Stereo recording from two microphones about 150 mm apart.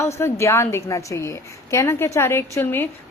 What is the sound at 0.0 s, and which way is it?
A woman's voice, 15° left (ahead or behind).